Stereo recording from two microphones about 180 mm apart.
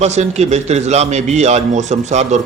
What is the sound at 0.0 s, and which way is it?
A man's voice, 40° right (ahead or behind).